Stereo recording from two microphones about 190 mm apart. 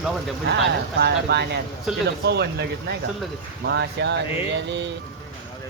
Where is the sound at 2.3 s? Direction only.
60° right (ahead or behind).